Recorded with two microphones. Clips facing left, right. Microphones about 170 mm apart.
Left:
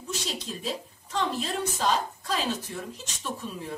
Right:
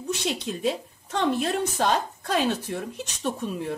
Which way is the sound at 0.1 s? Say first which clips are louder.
Right 6 dB; 60° right (ahead or behind).